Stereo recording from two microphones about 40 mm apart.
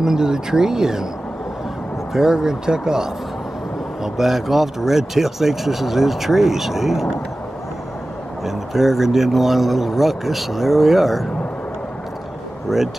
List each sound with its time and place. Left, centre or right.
0.0 s speech: centre
2.1 s speech: centre
8.5 s speech: centre
12.6 s speech: centre